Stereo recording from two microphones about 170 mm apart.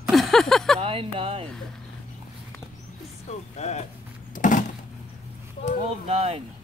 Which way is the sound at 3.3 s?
40° left (ahead or behind).